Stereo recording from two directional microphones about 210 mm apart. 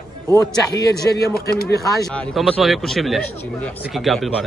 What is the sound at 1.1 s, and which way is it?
Speech, 50° left (ahead or behind).